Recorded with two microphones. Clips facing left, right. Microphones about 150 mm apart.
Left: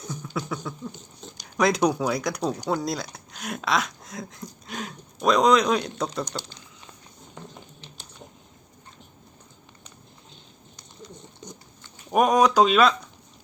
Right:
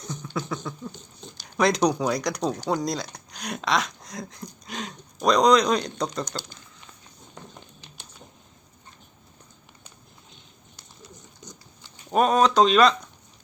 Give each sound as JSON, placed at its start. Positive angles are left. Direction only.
{"t": 0.0, "sound": "a sound", "side_deg": 5}
{"t": 1.2, "sound": "speech", "side_deg": 0}
{"t": 12.1, "sound": "speech", "side_deg": 10}